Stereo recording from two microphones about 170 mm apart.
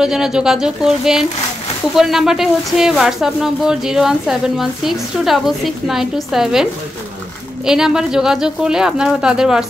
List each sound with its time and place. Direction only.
0.0 s speech: 5° right (ahead or behind)